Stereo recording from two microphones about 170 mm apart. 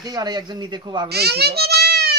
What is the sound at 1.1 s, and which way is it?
A child's voice, 70° right (ahead or behind).